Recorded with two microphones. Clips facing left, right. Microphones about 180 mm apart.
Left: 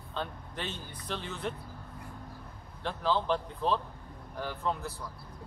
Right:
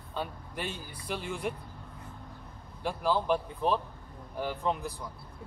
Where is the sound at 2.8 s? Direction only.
10° right (ahead or behind).